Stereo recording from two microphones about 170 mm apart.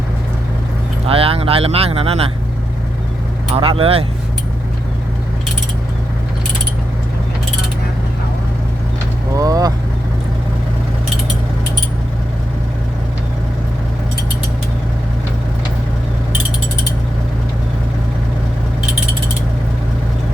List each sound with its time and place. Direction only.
1.0 s speech: 35° right (ahead or behind)
3.5 s speech: 35° right (ahead or behind)
9.3 s vehicle: 20° right (ahead or behind)